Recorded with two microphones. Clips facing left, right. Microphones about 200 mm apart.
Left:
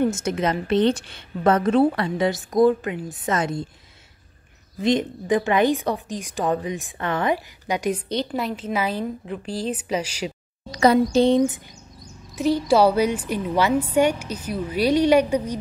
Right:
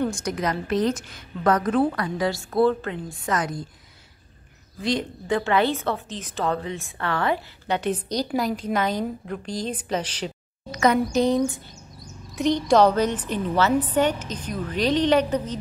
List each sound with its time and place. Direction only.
0.0 s a woman's voice: 25° left (ahead or behind)
4.8 s a woman's voice: 20° left (ahead or behind)
8.2 s a woman's voice: centre (ahead or behind)
10.7 s a woman's voice: 30° left (ahead or behind)
12.4 s a woman's voice: 5° left (ahead or behind)